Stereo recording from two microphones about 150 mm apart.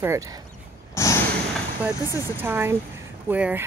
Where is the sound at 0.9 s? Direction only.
20° left (ahead or behind).